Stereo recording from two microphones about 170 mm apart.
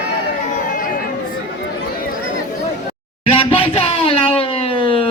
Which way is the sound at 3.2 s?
30° left (ahead or behind).